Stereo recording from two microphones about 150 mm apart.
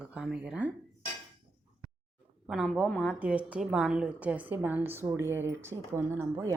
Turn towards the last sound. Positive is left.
turn(degrees=-15)  # may be behind; listen again after turning